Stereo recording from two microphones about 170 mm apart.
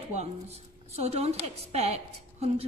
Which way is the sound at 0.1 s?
40° right (ahead or behind).